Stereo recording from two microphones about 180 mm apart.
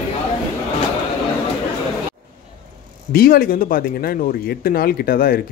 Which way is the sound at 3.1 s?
55° left (ahead or behind).